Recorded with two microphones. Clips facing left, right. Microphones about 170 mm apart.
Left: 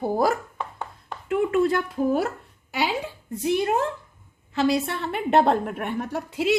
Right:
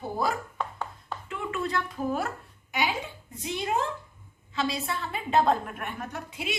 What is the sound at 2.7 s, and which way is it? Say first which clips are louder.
A woman's voice: left 4 dB; 70° left (ahead or behind).